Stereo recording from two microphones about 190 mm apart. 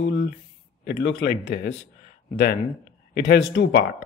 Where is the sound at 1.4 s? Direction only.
45° left (ahead or behind).